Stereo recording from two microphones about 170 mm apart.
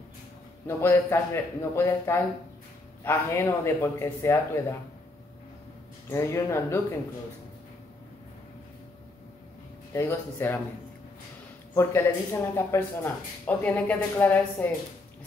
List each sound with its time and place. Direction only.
0.7 s speech: 15° left (ahead or behind)
6.0 s speech: 15° left (ahead or behind)
9.9 s speech: 15° left (ahead or behind)
11.7 s speech: 15° left (ahead or behind)